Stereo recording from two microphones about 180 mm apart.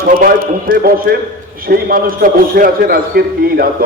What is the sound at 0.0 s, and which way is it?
A man's voice, 50° right (ahead or behind).